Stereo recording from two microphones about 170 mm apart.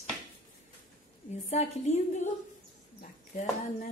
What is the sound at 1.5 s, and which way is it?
Speech, 40° left (ahead or behind).